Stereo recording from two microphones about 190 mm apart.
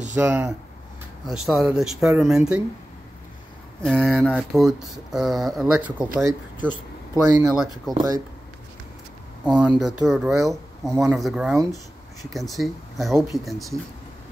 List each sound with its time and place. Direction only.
0.1 s speech: 10° right (ahead or behind)
3.8 s speech: centre (ahead or behind); by 7.5 s 15° right (ahead or behind)
7.5 s speech: centre (ahead or behind)
9.5 s speech: 5° right (ahead or behind)